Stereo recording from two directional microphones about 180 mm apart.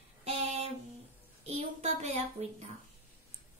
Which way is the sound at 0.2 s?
40° right (ahead or behind).